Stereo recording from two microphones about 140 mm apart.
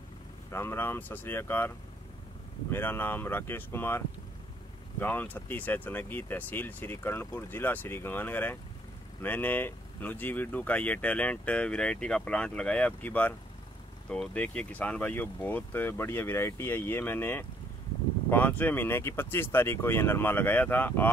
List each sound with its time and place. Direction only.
0.5 s speech: 15° left (ahead or behind)
2.7 s speech: 15° left (ahead or behind)